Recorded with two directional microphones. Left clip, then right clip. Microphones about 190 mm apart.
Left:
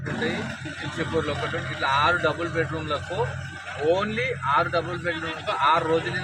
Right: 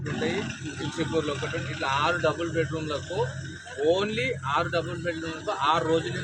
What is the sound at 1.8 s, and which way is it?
A man's voice, 30° right (ahead or behind).